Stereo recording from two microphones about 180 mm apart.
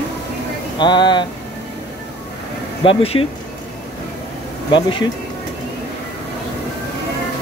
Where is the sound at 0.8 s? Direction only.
25° left (ahead or behind).